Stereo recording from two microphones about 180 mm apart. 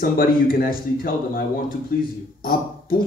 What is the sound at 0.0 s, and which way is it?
Speech, 50° left (ahead or behind).